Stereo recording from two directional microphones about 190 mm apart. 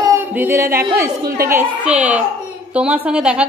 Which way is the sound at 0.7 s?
15° right (ahead or behind).